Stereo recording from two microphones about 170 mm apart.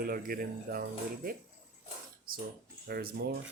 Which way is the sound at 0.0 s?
60° right (ahead or behind).